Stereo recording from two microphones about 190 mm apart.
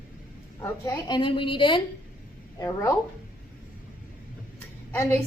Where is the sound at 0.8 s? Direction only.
20° left (ahead or behind).